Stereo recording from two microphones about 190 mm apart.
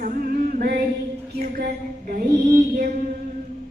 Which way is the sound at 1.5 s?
50° right (ahead or behind).